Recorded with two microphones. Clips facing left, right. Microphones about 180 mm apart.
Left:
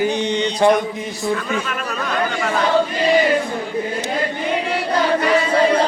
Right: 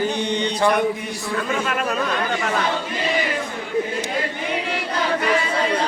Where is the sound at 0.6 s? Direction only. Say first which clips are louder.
Left 5 dB; 20° left (ahead or behind).